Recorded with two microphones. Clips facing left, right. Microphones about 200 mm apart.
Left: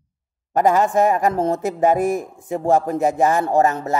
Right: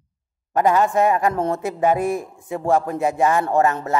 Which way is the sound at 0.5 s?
40° left (ahead or behind).